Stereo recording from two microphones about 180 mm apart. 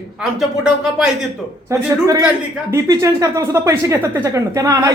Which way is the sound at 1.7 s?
20° right (ahead or behind).